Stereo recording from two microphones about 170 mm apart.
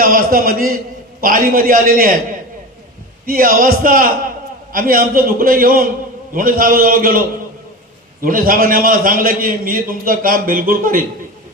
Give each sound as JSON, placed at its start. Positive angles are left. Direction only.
{"t": 0.0, "sound": "a man's voice", "side_deg": -55}
{"t": 3.2, "sound": "a man's voice", "side_deg": -55}